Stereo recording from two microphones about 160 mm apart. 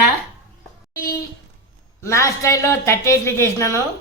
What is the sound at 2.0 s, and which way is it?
A woman's voice, 20° left (ahead or behind).